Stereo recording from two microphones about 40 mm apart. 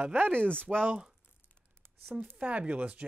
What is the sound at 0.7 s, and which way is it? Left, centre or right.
Speech, right.